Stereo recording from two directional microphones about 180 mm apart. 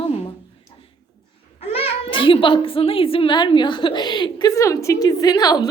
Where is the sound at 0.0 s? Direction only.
30° left (ahead or behind).